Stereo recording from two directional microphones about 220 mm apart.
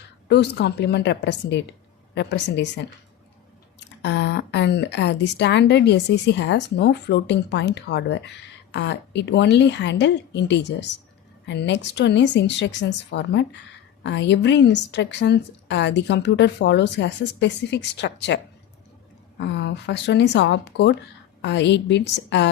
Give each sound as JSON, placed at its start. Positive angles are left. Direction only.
{"t": 0.3, "sound": "speech", "side_deg": 50}
{"t": 19.4, "sound": "speech", "side_deg": 55}